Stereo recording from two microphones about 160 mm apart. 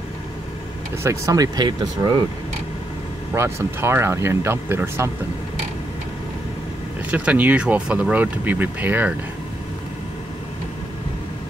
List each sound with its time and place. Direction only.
1.0 s speech: 20° right (ahead or behind)
3.3 s speech: 15° right (ahead or behind)
7.1 s speech: 10° right (ahead or behind)